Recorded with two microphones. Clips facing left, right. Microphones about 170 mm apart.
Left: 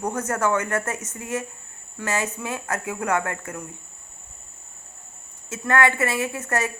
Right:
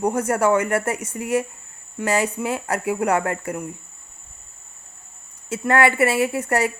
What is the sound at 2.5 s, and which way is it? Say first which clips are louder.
Speech: right 5 dB; 35° right (ahead or behind).